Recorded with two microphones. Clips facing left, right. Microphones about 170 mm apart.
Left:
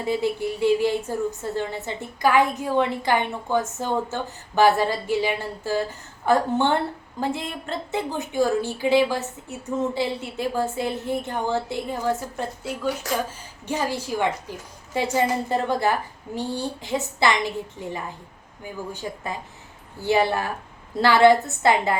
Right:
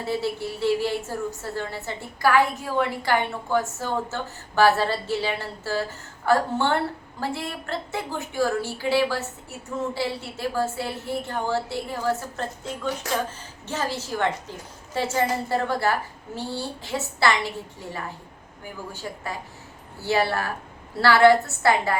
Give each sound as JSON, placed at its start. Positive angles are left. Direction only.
{"t": 0.0, "sound": "a woman's voice", "side_deg": 15}
{"t": 13.7, "sound": "a woman's voice", "side_deg": 15}